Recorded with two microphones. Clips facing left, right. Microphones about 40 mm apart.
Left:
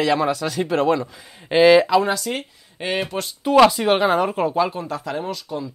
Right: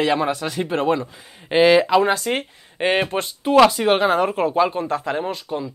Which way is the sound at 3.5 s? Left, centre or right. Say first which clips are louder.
Even; centre.